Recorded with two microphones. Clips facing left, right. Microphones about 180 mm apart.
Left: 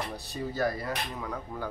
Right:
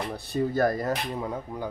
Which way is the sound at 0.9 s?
25° right (ahead or behind).